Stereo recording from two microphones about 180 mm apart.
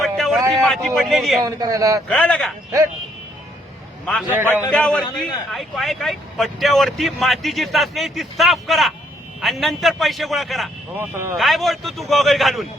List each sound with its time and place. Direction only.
0.0 s a sound: centre (ahead or behind)
1.5 s a man's voice: 20° right (ahead or behind)
2.0 s speech: 5° left (ahead or behind)
4.0 s speech: 5° left (ahead or behind)
10.9 s a man's voice: 10° right (ahead or behind)
11.3 s speech: centre (ahead or behind)